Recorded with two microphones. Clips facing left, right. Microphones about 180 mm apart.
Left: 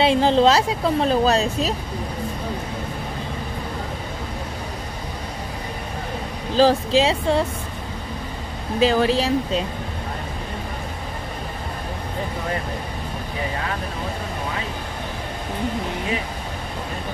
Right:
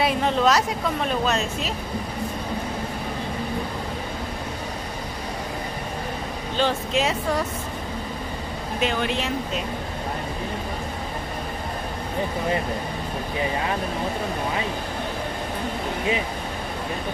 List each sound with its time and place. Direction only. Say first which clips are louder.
0.0 s speech: left 5 dB; 30° left (ahead or behind)
6.5 s speech: left 7 dB; 35° left (ahead or behind)
8.7 s speech: left 7 dB; 35° left (ahead or behind)